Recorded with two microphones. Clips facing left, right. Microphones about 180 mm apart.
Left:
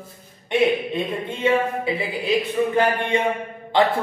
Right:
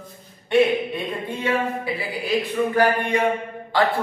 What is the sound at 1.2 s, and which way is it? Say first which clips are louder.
A man's voice: left 3 dB; 25° left (ahead or behind).